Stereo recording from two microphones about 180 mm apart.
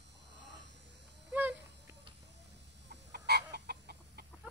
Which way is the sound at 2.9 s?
65° right (ahead or behind).